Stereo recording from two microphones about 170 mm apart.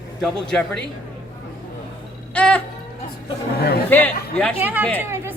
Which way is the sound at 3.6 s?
70° left (ahead or behind).